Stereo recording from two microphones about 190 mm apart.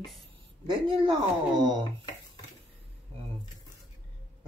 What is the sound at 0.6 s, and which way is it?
Speech, 25° right (ahead or behind).